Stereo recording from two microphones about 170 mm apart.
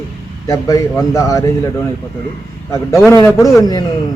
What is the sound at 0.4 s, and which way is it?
A man's voice, 20° left (ahead or behind).